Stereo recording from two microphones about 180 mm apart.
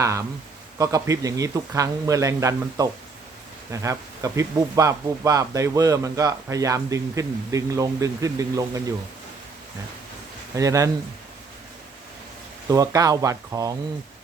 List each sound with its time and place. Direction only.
0.0 s speech: 15° right (ahead or behind)
10.5 s speech: 15° right (ahead or behind)
12.6 s speech: 20° right (ahead or behind)